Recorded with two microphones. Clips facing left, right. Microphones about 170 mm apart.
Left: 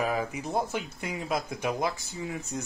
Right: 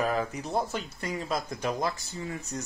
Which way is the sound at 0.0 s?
10° left (ahead or behind).